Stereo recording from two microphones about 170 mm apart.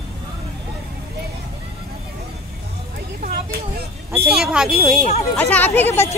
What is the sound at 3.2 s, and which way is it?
Speech, 65° right (ahead or behind).